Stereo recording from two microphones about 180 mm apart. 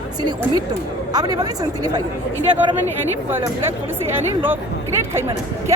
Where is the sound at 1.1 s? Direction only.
20° right (ahead or behind).